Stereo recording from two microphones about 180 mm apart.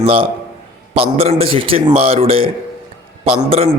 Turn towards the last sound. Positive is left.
turn(degrees=-30)  # may be behind; listen again after turning